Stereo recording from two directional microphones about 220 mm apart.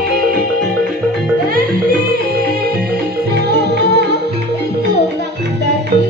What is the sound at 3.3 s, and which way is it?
Music, 50° right (ahead or behind).